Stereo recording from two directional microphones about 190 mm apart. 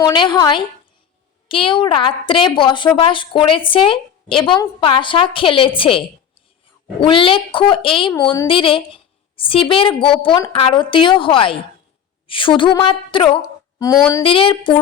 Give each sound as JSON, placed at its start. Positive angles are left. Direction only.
{"t": 0.0, "sound": "a woman's voice", "side_deg": 25}